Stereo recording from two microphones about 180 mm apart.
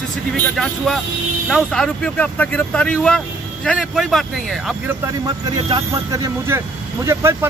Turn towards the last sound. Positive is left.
turn(degrees=-15)  # may be behind; listen again after turning